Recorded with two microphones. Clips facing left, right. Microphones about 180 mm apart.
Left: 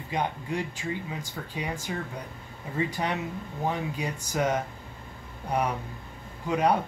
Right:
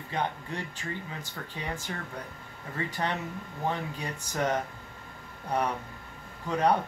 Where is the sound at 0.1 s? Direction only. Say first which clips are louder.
Left 3 dB; 15° left (ahead or behind).